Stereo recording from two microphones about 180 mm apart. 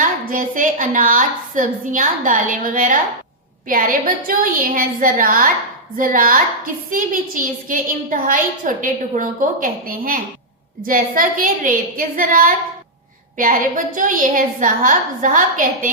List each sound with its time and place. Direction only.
0.3 s a woman's voice: 50° right (ahead or behind)